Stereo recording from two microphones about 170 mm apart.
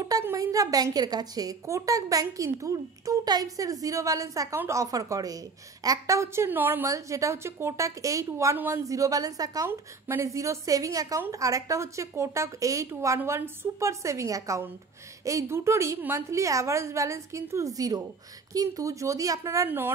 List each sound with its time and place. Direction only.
0.0 s a woman's voice: 20° right (ahead or behind)